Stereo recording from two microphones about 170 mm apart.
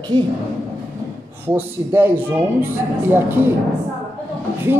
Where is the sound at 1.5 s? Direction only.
10° right (ahead or behind).